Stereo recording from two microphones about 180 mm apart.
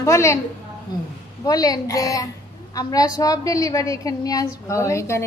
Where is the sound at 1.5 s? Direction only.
20° left (ahead or behind).